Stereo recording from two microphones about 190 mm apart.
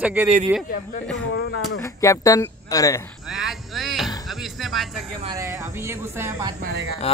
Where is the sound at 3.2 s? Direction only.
Centre (ahead or behind).